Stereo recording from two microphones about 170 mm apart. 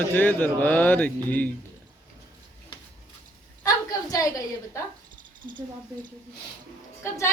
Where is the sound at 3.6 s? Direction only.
20° left (ahead or behind).